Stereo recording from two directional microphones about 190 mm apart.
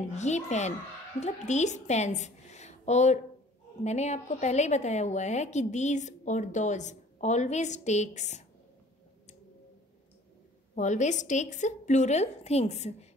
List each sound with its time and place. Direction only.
0.1 s a woman's voice: 35° left (ahead or behind)
10.7 s a woman's voice: 40° left (ahead or behind)